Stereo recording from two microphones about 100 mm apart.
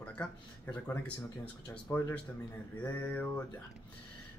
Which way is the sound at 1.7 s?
15° left (ahead or behind).